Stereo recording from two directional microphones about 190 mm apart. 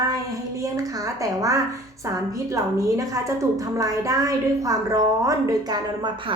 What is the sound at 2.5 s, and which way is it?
A woman's voice, 15° right (ahead or behind).